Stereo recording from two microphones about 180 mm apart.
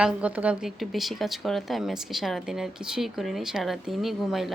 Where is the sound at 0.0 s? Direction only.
5° right (ahead or behind).